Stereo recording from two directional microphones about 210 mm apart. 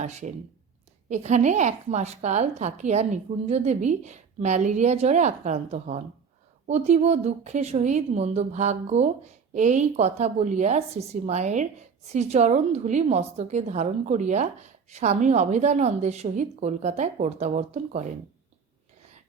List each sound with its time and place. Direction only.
0.0 s speech: 35° right (ahead or behind)